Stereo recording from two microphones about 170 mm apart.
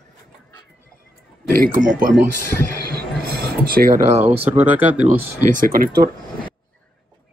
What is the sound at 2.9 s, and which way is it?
Music, 60° right (ahead or behind).